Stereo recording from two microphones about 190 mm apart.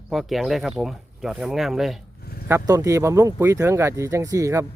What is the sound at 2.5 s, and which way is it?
Speech, 15° right (ahead or behind).